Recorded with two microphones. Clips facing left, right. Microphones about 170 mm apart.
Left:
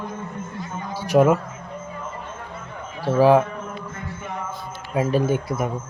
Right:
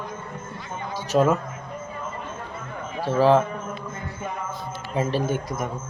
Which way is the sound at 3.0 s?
10° left (ahead or behind).